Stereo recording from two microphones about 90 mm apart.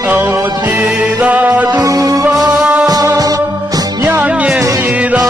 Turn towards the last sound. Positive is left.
turn(degrees=-15)  # may be behind; listen again after turning